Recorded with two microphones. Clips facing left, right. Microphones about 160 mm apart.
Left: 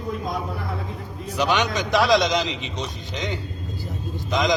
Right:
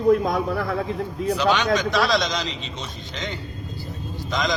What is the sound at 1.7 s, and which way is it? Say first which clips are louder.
A man's voice: left 2 dB; 15° left (ahead or behind).